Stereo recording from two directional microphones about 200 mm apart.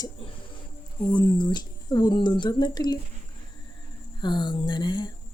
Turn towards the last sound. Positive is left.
turn(degrees=20)  # may be behind; listen again after turning